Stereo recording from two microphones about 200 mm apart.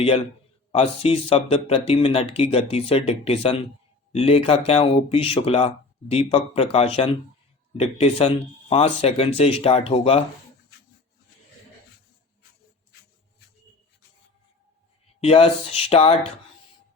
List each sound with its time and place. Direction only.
0.7 s speech: 30° left (ahead or behind)
15.2 s speech: 30° left (ahead or behind)